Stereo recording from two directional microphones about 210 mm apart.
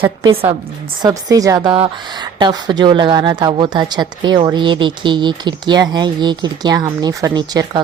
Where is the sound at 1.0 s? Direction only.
15° right (ahead or behind).